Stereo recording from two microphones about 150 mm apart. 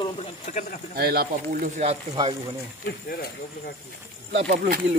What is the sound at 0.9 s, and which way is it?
Speech, 90° right.